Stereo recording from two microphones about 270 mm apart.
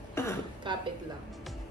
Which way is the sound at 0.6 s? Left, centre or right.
Centre.